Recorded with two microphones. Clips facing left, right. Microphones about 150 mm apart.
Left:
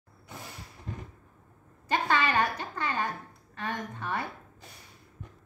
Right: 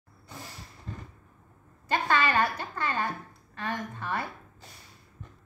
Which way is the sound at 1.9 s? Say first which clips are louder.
Right 1 dB; 15° left (ahead or behind).